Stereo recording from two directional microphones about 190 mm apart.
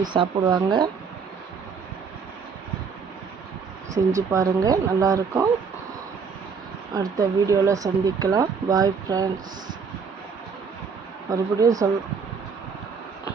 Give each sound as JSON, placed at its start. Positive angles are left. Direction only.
{"t": 0.1, "sound": "speech", "side_deg": -25}
{"t": 3.9, "sound": "speech", "side_deg": -15}
{"t": 6.9, "sound": "speech", "side_deg": -15}
{"t": 11.3, "sound": "speech", "side_deg": -20}